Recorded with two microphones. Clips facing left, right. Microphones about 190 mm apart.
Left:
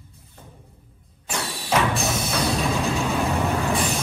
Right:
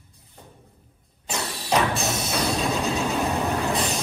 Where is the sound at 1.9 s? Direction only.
Centre (ahead or behind).